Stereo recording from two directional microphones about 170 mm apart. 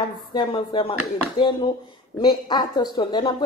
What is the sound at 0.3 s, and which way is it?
Speech, 30° left (ahead or behind).